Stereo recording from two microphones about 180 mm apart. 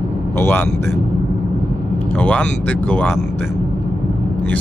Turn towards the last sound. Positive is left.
turn(degrees=10)  # may be behind; listen again after turning